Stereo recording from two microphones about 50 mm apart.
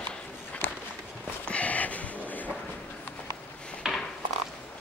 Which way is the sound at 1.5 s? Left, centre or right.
Left.